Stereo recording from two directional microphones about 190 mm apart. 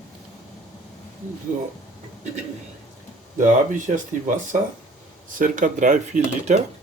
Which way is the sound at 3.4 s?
40° right (ahead or behind).